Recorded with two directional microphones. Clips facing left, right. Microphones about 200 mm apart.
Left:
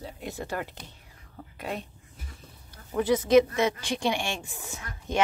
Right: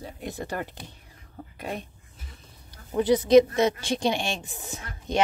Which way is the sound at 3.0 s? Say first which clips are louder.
Right 3 dB; 35° right (ahead or behind).